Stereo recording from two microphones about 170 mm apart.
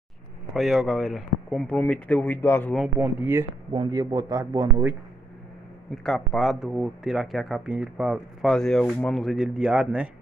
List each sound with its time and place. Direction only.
0.6 s speech: centre (ahead or behind)
3.0 s speech: 10° right (ahead or behind)
3.7 s speech: 25° right (ahead or behind)
6.0 s speech: centre (ahead or behind)